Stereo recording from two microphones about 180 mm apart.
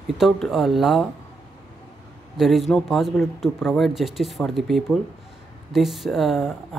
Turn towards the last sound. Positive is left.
turn(degrees=0)  # may be behind; listen again after turning